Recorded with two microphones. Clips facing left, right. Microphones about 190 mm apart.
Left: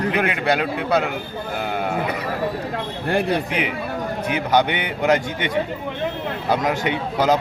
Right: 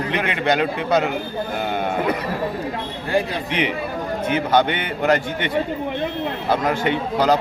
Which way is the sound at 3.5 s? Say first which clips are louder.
Right 1 dB; 5° left (ahead or behind).